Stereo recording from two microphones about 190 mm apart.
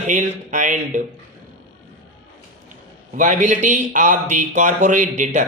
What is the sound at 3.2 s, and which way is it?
Speech, 40° right (ahead or behind).